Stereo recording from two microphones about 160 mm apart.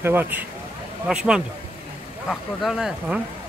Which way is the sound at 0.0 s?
10° right (ahead or behind).